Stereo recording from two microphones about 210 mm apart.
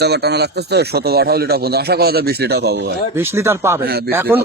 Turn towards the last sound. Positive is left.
turn(degrees=-10)  # may be behind; listen again after turning